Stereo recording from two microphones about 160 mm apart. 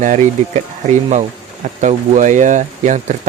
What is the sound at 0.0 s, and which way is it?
Speech, 50° right (ahead or behind).